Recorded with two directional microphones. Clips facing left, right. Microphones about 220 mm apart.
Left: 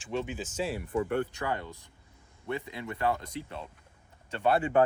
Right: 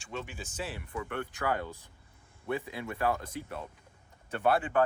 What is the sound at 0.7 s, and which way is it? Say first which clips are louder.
Speech: left 8 dB; 35° left (ahead or behind).